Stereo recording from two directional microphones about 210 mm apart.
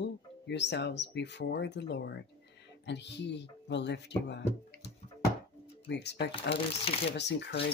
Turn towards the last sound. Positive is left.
turn(degrees=55)  # may be behind; listen again after turning